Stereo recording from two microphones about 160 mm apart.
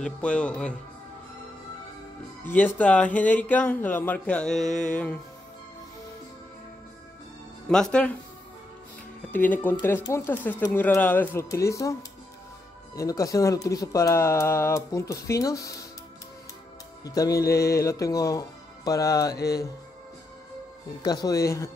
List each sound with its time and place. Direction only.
0.0 s speech: 5° left (ahead or behind)
2.4 s speech: 10° left (ahead or behind)
4.6 s mantra: 50° left (ahead or behind)
4.9 s speech: 5° left (ahead or behind)
7.6 s speech: 5° left (ahead or behind)
9.3 s speech: 10° left (ahead or behind)
12.9 s speech: 20° left (ahead or behind)
17.0 s speech: 20° left (ahead or behind)
21.0 s speech: 25° left (ahead or behind)